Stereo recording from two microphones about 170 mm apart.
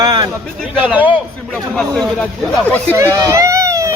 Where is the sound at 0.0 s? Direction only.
25° right (ahead or behind).